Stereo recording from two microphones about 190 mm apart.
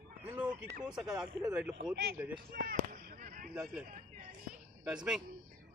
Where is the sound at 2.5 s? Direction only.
50° right (ahead or behind).